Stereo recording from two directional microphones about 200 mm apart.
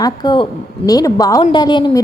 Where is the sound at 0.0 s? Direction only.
20° left (ahead or behind).